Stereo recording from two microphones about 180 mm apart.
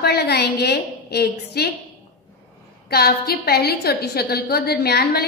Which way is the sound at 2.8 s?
60° left (ahead or behind).